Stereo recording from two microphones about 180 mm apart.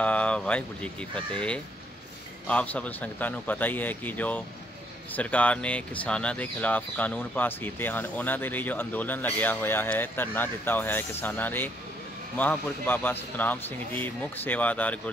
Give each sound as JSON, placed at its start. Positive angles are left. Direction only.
{"t": 0.0, "sound": "speech", "side_deg": 5}